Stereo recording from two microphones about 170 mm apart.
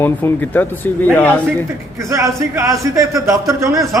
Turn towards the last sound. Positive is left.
turn(degrees=-20)  # may be behind; listen again after turning